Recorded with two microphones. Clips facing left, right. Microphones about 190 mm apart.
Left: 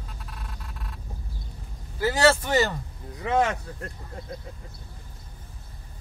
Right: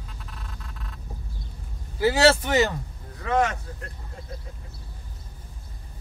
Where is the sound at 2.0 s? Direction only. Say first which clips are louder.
Right 2 dB; 10° right (ahead or behind).